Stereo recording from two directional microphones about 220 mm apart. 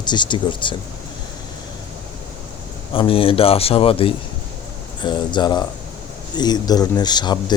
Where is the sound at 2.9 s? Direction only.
25° left (ahead or behind).